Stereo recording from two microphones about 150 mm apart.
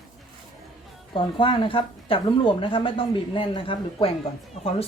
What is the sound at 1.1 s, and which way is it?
A woman's voice, 35° left (ahead or behind).